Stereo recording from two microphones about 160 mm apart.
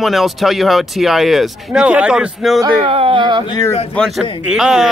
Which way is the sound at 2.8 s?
35° right (ahead or behind).